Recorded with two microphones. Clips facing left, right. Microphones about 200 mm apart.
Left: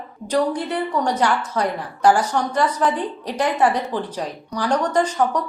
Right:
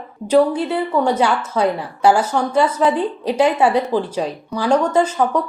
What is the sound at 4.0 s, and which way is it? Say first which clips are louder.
Speech: right 5 dB; 25° right (ahead or behind).